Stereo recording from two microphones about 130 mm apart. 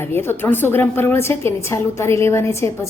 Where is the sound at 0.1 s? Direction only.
15° left (ahead or behind).